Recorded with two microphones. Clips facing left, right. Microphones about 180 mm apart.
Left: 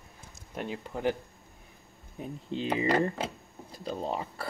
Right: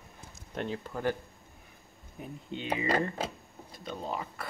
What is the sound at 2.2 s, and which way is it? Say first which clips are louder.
Speech: left 5 dB; 35° left (ahead or behind).